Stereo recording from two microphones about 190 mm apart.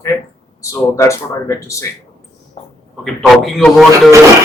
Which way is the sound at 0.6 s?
15° left (ahead or behind).